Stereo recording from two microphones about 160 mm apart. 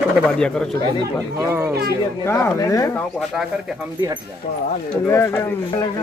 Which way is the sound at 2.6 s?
20° left (ahead or behind).